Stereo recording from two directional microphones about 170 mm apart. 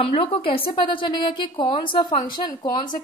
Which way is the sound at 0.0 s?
35° left (ahead or behind).